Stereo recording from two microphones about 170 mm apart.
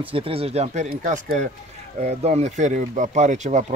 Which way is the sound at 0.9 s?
55° right (ahead or behind).